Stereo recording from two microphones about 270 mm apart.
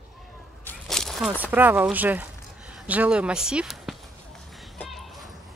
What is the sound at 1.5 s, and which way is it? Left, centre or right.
Speech, centre.